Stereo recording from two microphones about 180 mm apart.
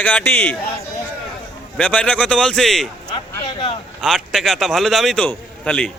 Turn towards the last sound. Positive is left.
turn(degrees=5)  # may be behind; listen again after turning